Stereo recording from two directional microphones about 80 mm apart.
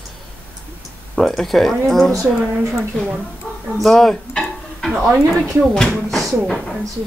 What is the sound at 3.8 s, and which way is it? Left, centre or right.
Speech, centre.